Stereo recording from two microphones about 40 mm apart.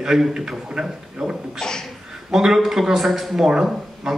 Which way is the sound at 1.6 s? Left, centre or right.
Centre.